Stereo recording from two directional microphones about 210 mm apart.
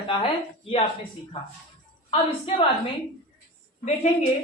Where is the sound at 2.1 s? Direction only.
25° left (ahead or behind).